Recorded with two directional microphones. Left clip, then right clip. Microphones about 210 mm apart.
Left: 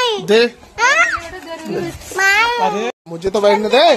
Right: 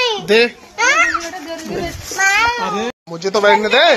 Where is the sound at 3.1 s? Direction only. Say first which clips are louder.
Right 1 dB; 25° left (ahead or behind).